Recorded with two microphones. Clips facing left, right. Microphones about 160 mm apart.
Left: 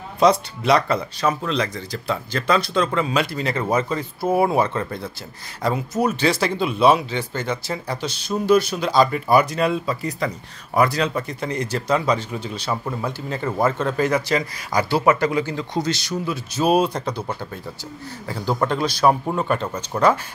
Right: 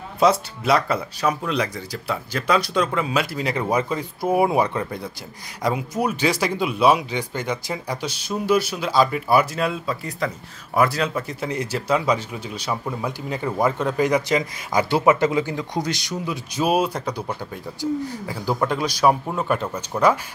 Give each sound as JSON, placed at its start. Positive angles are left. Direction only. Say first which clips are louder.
{"t": 0.2, "sound": "speech", "louder": "left 1 dB", "side_deg": -5}